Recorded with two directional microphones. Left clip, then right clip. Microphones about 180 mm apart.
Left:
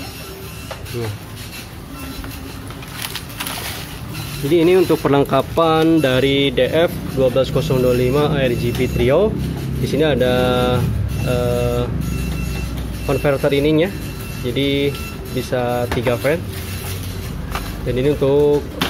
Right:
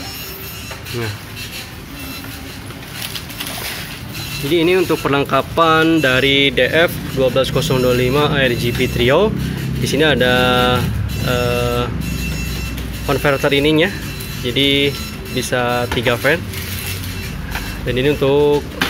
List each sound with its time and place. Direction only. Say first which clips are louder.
4.5 s speech: left 1 dB; 15° left (ahead or behind)
13.0 s speech: right 1 dB; 5° left (ahead or behind)
17.8 s speech: right 1 dB; 10° left (ahead or behind)